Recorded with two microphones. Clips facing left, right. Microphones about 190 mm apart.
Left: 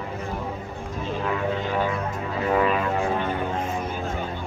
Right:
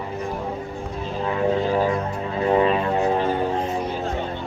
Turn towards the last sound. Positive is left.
turn(degrees=-30)  # may be behind; listen again after turning